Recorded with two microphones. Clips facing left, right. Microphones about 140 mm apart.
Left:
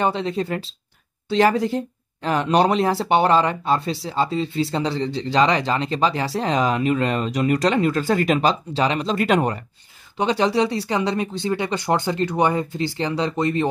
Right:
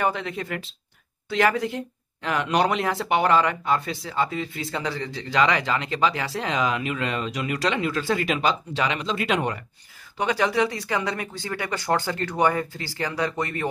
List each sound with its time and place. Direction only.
0.0 s speech: 30° left (ahead or behind)
10.1 s speech: 25° left (ahead or behind)